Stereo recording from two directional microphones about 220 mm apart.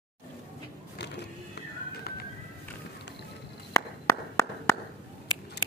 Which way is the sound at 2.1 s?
45° left (ahead or behind).